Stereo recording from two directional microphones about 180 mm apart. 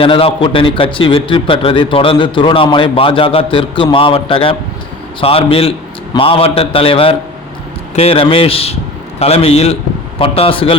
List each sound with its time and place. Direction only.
0.0 s a man's voice: 30° left (ahead or behind)